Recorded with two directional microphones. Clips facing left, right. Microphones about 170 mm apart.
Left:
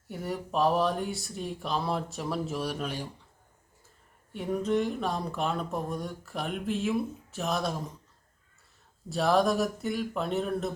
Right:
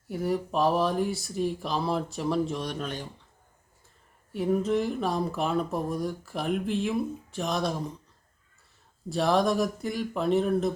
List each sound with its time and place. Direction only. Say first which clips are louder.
0.1 s speech: right 5 dB; centre (ahead or behind)
4.3 s speech: right 3 dB; centre (ahead or behind)
9.0 s speech: right 1 dB; centre (ahead or behind)